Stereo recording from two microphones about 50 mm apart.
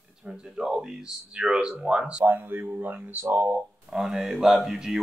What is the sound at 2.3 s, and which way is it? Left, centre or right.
Speech, right.